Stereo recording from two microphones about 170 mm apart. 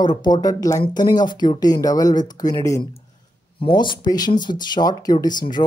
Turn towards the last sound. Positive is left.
turn(degrees=25)  # may be behind; listen again after turning